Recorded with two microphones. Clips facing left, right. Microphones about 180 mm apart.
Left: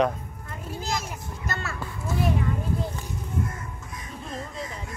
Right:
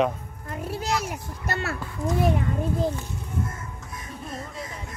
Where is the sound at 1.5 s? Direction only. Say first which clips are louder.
Right 5 dB; 65° right (ahead or behind).